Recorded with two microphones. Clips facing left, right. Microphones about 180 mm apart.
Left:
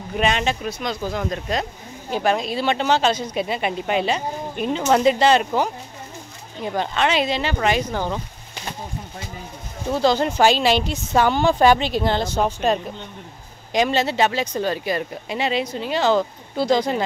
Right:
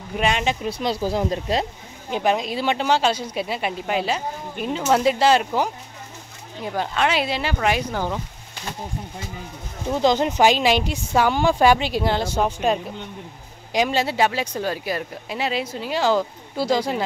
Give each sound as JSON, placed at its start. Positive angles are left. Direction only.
{"t": 0.2, "sound": "speech", "side_deg": -10}
{"t": 0.7, "sound": "speech", "side_deg": -30}
{"t": 2.0, "sound": "speech", "side_deg": -15}
{"t": 6.6, "sound": "speech", "side_deg": 0}
{"t": 9.9, "sound": "speech", "side_deg": -15}